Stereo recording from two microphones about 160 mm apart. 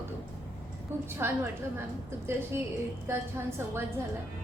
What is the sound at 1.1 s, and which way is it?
A woman's voice, 15° right (ahead or behind).